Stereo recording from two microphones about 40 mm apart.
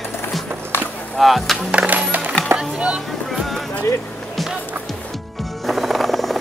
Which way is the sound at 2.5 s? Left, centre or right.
Right.